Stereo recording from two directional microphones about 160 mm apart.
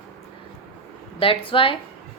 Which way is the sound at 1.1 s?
35° left (ahead or behind).